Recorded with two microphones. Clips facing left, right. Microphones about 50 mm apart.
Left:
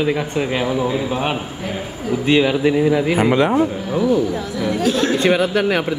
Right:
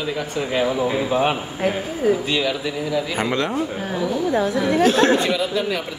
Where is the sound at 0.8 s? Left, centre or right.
Centre.